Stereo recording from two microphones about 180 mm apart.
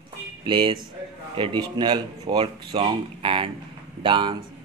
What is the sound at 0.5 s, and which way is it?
Speech, 25° right (ahead or behind).